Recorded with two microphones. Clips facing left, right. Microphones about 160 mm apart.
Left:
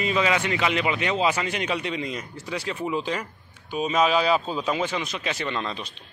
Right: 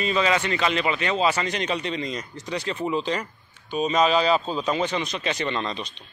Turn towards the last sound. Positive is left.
turn(degrees=5)  # may be behind; listen again after turning